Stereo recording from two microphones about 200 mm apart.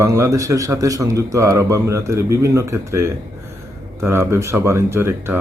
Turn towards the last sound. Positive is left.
turn(degrees=-10)  # may be behind; listen again after turning